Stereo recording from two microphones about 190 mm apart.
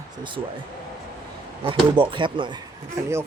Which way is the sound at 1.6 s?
25° right (ahead or behind).